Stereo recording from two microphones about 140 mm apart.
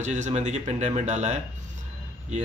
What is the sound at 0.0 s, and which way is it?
Speech, 60° right (ahead or behind).